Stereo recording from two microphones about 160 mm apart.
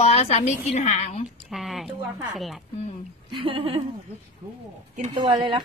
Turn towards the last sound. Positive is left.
turn(degrees=-30)  # may be behind; listen again after turning